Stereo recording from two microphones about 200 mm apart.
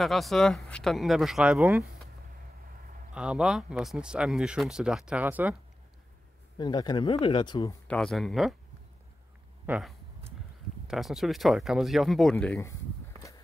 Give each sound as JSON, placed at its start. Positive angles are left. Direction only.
{"t": 0.0, "sound": "speech", "side_deg": 0}
{"t": 3.2, "sound": "speech", "side_deg": -5}
{"t": 6.6, "sound": "speech", "side_deg": 20}
{"t": 7.9, "sound": "speech", "side_deg": 0}
{"t": 9.7, "sound": "speech", "side_deg": 0}